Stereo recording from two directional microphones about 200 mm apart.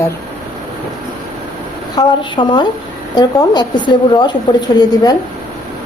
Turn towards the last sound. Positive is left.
turn(degrees=20)  # may be behind; listen again after turning